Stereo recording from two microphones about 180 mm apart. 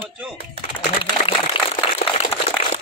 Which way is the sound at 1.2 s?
30° left (ahead or behind).